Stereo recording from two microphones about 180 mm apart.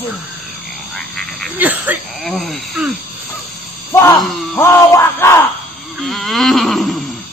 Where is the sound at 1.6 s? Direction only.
10° right (ahead or behind).